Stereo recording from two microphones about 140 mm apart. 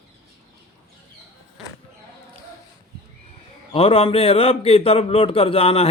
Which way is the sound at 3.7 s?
40° left (ahead or behind).